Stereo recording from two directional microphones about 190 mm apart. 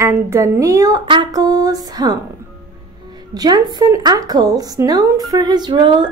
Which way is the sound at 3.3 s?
20° right (ahead or behind).